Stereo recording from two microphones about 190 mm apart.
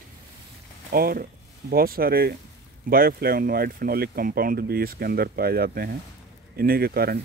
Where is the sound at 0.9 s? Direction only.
50° right (ahead or behind).